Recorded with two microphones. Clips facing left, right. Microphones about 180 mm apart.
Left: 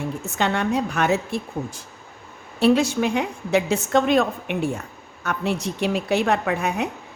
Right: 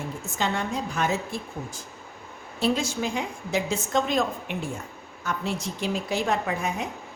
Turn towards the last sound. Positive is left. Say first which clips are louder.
# left 5 dB
turn(degrees=70)  # may be behind; listen again after turning